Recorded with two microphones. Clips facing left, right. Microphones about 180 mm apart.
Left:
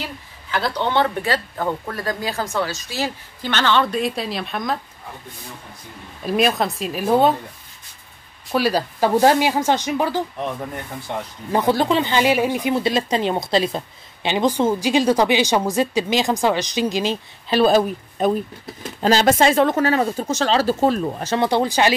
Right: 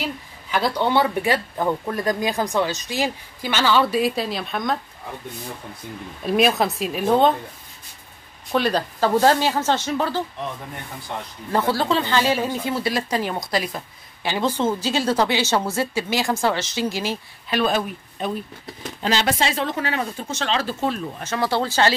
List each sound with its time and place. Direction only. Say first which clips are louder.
0.5 s speech: right 1 dB; 10° right (ahead or behind)
6.2 s speech: even; centre (ahead or behind)
8.5 s speech: left 1 dB; 5° left (ahead or behind)
11.5 s speech: left 3 dB; 15° left (ahead or behind)
17.5 s speech: left 6 dB; 35° left (ahead or behind)
21.4 s speech: left 2 dB; 15° left (ahead or behind)